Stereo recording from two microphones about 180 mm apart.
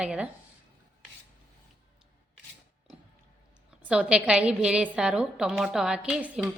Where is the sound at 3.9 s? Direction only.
5° right (ahead or behind).